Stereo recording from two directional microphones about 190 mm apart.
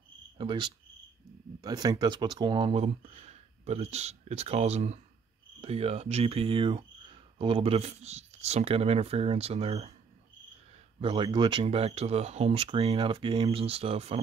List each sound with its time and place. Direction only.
0.4 s cricket: 25° right (ahead or behind)
1.6 s speech: 20° right (ahead or behind)
11.0 s speech: 30° right (ahead or behind)